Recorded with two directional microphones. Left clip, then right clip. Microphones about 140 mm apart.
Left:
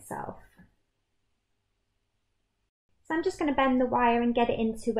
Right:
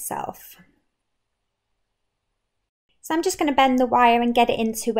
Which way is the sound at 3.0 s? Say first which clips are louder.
Right 6 dB; 15° right (ahead or behind).